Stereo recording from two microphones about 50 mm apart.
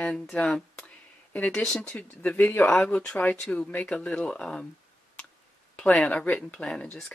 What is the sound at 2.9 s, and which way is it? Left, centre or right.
Speech, left.